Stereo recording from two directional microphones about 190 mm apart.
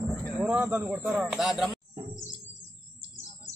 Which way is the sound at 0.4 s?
10° right (ahead or behind).